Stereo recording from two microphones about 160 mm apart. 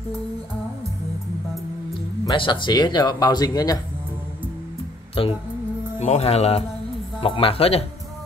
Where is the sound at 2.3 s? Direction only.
30° left (ahead or behind).